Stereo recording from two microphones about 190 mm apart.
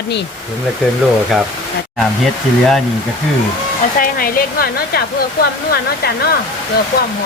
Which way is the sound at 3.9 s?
50° left (ahead or behind).